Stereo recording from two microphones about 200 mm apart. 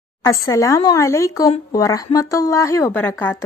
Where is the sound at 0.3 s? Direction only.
15° left (ahead or behind).